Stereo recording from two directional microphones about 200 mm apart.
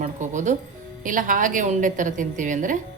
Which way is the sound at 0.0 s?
40° right (ahead or behind).